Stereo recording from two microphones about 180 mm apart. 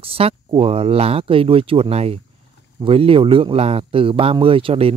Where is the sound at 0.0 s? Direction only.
30° right (ahead or behind).